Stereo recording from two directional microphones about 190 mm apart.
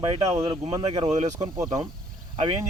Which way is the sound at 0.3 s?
20° right (ahead or behind).